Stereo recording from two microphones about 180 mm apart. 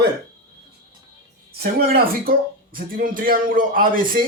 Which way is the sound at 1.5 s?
55° right (ahead or behind).